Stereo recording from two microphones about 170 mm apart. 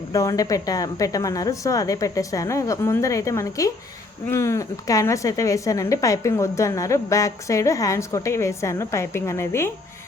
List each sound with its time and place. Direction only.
0.1 s a woman's voice: 20° left (ahead or behind)